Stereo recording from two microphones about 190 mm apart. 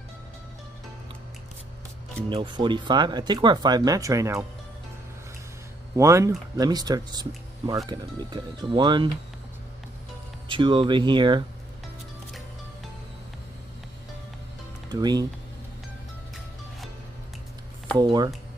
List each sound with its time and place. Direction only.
2.2 s speech: 25° right (ahead or behind)
5.9 s speech: 15° right (ahead or behind)
10.5 s speech: 25° right (ahead or behind)
14.9 s speech: 20° right (ahead or behind)
17.9 s speech: 20° right (ahead or behind)